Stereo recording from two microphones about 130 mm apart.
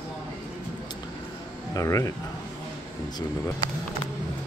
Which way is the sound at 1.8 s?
25° left (ahead or behind).